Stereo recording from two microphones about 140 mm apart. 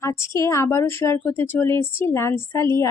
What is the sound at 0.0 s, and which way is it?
A woman's voice, 20° left (ahead or behind).